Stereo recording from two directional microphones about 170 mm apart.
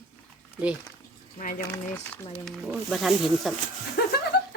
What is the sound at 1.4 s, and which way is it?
Speech, 50° left (ahead or behind).